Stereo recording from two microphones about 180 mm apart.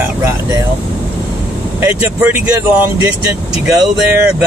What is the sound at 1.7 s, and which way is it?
Speech, 10° right (ahead or behind).